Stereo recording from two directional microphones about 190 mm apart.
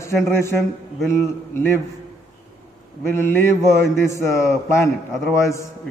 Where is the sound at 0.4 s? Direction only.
15° left (ahead or behind).